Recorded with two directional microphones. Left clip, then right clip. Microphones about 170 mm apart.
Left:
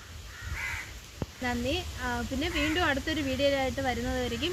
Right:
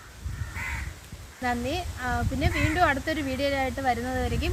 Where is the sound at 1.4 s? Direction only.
30° right (ahead or behind).